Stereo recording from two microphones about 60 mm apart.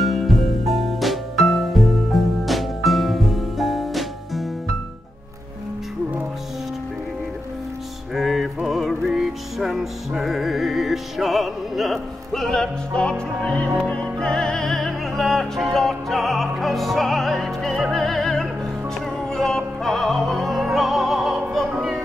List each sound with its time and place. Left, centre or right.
0.0 s music: centre
8.1 s music: centre
13.4 s music: centre
17.9 s opera: centre
19.2 s music: centre